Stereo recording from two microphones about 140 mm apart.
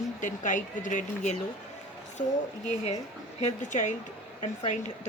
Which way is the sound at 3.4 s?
60° left (ahead or behind).